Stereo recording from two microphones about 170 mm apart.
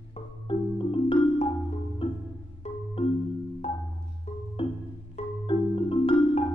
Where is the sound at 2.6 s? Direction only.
35° left (ahead or behind).